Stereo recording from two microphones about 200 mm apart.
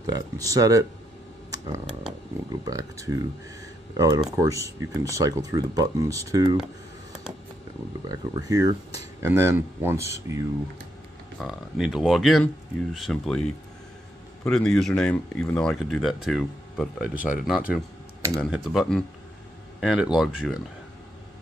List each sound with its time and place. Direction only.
0.0 s speech: 15° right (ahead or behind)
2.6 s speech: 15° right (ahead or behind)
8.1 s speech: 15° right (ahead or behind)
11.3 s speech: centre (ahead or behind)